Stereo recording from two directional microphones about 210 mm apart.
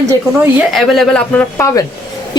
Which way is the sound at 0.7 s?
Centre (ahead or behind).